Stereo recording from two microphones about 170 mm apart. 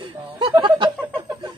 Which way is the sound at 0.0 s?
30° right (ahead or behind).